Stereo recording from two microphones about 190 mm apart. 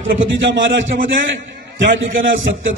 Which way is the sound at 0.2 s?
75° right (ahead or behind).